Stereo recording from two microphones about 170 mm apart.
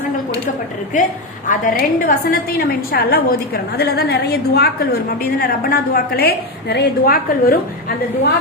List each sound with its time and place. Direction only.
0.9 s a woman's voice: 50° left (ahead or behind)